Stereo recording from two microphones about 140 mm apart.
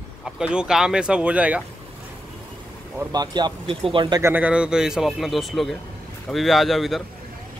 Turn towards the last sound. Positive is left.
turn(degrees=0)  # may be behind; listen again after turning